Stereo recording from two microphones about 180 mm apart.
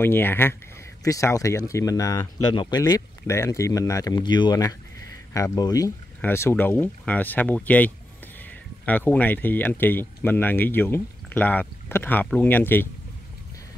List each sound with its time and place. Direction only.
0.0 s speech: 10° left (ahead or behind)